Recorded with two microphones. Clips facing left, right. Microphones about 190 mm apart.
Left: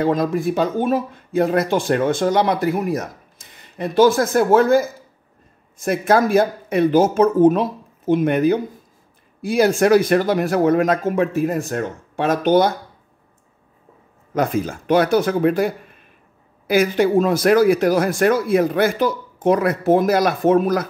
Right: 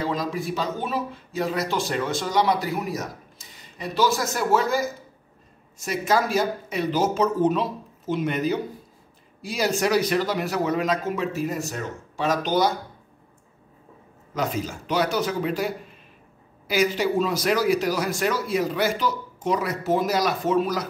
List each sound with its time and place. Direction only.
0.0 s speech: 55° left (ahead or behind)
14.3 s speech: 55° left (ahead or behind)